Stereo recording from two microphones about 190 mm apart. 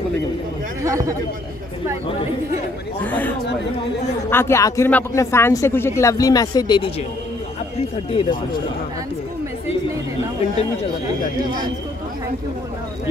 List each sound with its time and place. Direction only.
0.8 s speech: 15° right (ahead or behind)
3.0 s speech: 10° left (ahead or behind)
8.1 s speech: 30° left (ahead or behind)